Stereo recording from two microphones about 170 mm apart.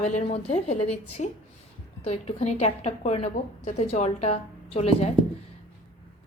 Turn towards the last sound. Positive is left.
turn(degrees=35)  # may be behind; listen again after turning